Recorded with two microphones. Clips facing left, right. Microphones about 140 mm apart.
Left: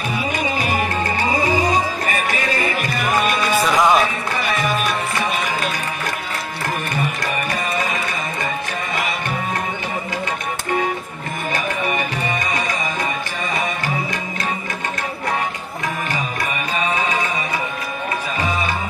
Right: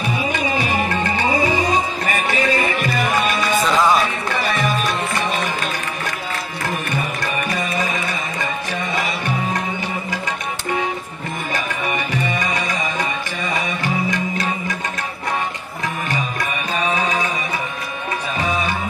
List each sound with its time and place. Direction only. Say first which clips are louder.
3.6 s music: left 1 dB; 15° left (ahead or behind)